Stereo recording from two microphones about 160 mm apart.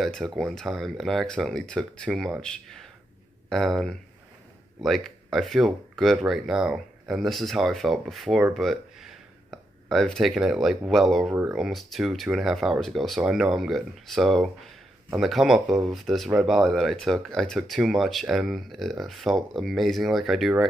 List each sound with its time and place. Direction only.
0.0 s speech: centre (ahead or behind)
8.5 s a sound: centre (ahead or behind)
10.9 s speech: centre (ahead or behind)